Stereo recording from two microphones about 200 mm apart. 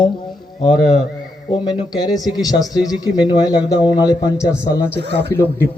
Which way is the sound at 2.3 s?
20° left (ahead or behind).